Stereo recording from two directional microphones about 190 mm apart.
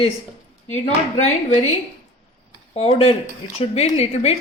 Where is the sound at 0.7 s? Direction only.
35° left (ahead or behind).